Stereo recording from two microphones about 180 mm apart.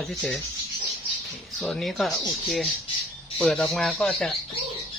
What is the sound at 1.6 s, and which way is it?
Speech, centre (ahead or behind).